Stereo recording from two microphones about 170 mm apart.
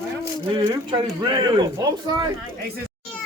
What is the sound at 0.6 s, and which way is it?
Speech, 15° right (ahead or behind).